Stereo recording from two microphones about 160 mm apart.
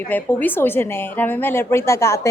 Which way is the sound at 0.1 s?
10° left (ahead or behind).